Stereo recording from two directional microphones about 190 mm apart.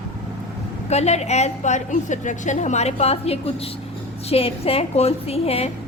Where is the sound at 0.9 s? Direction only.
35° left (ahead or behind).